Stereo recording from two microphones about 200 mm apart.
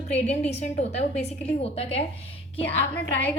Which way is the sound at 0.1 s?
35° left (ahead or behind).